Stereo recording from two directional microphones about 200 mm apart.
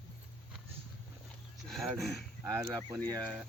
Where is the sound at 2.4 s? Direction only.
20° right (ahead or behind).